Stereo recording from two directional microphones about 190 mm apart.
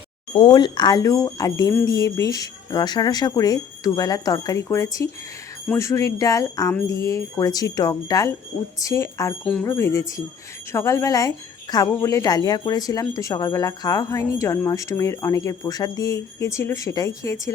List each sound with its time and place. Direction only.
0.3 s speech: 25° left (ahead or behind)